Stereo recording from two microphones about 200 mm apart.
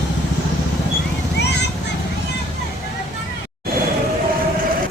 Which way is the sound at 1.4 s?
55° left (ahead or behind).